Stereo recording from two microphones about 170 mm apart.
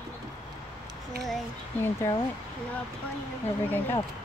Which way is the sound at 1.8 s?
20° left (ahead or behind).